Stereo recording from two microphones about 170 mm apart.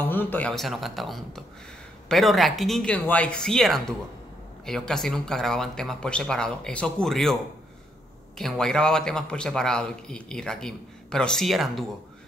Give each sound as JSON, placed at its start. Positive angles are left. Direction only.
{"t": 0.0, "sound": "a man's voice", "side_deg": 10}
{"t": 8.4, "sound": "a man's voice", "side_deg": 5}